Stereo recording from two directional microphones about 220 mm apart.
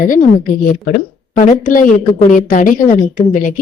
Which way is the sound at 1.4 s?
35° left (ahead or behind).